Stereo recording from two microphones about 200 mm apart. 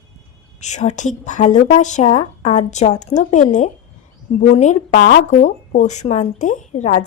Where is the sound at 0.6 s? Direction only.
35° left (ahead or behind).